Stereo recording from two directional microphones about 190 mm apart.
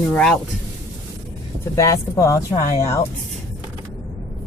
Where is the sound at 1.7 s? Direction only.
15° left (ahead or behind).